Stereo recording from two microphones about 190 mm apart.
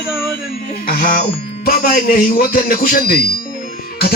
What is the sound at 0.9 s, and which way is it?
Music, 50° left (ahead or behind).